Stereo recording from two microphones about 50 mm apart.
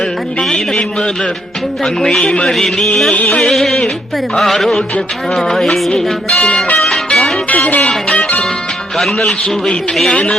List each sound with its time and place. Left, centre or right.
1.8 s music: centre
2.5 s music: centre
6.3 s speech: left
6.7 s music: centre
7.5 s music: left
10.1 s speech: left